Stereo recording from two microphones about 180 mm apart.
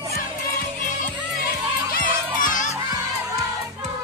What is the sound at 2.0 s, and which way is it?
Music, 50° left (ahead or behind).